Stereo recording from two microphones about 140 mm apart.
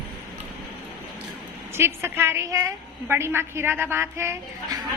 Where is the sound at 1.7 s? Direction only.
20° right (ahead or behind).